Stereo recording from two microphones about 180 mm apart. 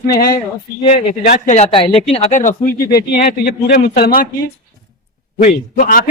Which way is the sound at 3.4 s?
60° left (ahead or behind).